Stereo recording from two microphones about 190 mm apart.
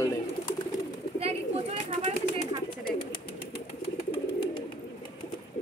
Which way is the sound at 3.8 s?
30° left (ahead or behind).